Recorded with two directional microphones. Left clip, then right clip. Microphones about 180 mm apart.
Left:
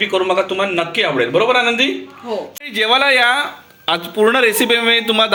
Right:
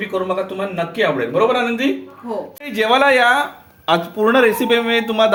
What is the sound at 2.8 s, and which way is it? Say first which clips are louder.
A man's voice: even; 5° left (ahead or behind).